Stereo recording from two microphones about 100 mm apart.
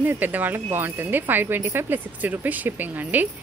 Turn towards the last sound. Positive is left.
turn(degrees=-15)  # may be behind; listen again after turning